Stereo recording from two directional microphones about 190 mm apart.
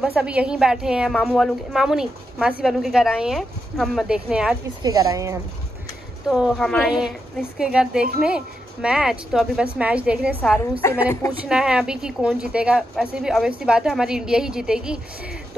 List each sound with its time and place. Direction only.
0.0 s a woman's voice: 5° right (ahead or behind)
4.8 s speech: 20° right (ahead or behind)
6.2 s a woman's voice: 5° right (ahead or behind)
10.8 s a woman's voice: 15° left (ahead or behind)
11.4 s a woman's voice: 5° right (ahead or behind)